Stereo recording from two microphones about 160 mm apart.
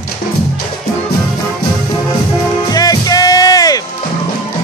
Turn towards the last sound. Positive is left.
turn(degrees=25)  # may be behind; listen again after turning